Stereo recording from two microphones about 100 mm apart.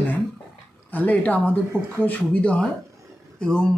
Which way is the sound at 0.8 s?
15° left (ahead or behind).